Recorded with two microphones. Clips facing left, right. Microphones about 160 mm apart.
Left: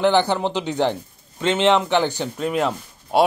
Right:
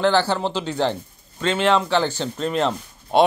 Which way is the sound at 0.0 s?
15° left (ahead or behind).